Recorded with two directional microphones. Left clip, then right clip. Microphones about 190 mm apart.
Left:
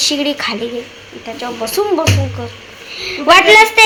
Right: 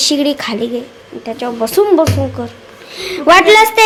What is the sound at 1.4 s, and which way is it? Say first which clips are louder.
A child's voice: right 5 dB; 45° right (ahead or behind).